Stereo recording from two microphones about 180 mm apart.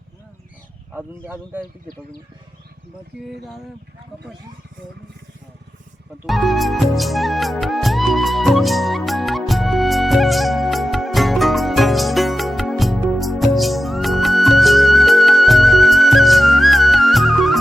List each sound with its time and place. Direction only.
0.9 s speech: 10° right (ahead or behind)
3.2 s a sound: centre (ahead or behind)
6.2 s music: centre (ahead or behind)